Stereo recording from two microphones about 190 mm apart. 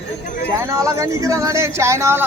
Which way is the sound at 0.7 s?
15° right (ahead or behind).